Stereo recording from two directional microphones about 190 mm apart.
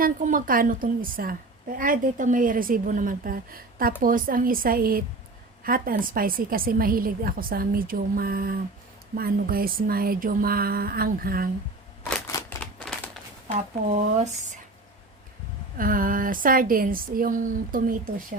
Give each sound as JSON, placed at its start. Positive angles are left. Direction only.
{"t": 0.0, "sound": "a woman's voice", "side_deg": -45}
{"t": 12.3, "sound": "a sound", "side_deg": 15}
{"t": 15.8, "sound": "a woman's voice", "side_deg": -45}